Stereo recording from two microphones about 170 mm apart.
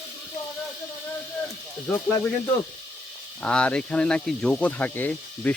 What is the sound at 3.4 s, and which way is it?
Speech, 5° left (ahead or behind).